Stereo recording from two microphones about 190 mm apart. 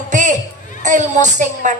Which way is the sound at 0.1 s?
40° right (ahead or behind).